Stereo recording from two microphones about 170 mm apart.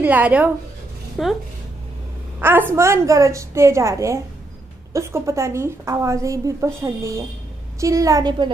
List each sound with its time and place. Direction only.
0.0 s a woman's voice: 10° right (ahead or behind)
1.2 s speech: centre (ahead or behind)
2.4 s a woman's voice: 15° right (ahead or behind)